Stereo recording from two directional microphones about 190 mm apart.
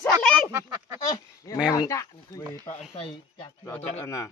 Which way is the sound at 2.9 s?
30° left (ahead or behind).